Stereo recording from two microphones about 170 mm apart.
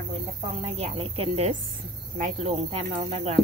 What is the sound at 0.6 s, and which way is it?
Speech, 35° right (ahead or behind).